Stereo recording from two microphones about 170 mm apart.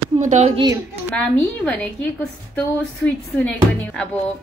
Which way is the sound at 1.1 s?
5° left (ahead or behind).